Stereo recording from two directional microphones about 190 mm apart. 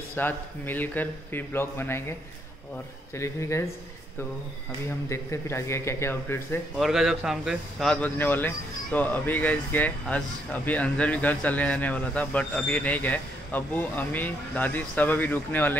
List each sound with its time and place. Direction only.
0.1 s speech: 10° left (ahead or behind)
3.2 s speech: 15° left (ahead or behind)
5.1 s speech: 15° left (ahead or behind)
6.8 s speech: centre (ahead or behind)